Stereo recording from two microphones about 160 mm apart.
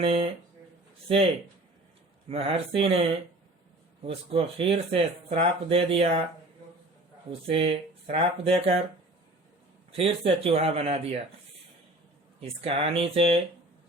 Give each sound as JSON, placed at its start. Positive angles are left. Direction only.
{"t": 0.0, "sound": "speech", "side_deg": -35}
{"t": 2.3, "sound": "speech", "side_deg": -35}
{"t": 4.0, "sound": "speech", "side_deg": -35}
{"t": 7.4, "sound": "speech", "side_deg": -35}
{"t": 9.9, "sound": "speech", "side_deg": -35}
{"t": 12.4, "sound": "speech", "side_deg": -35}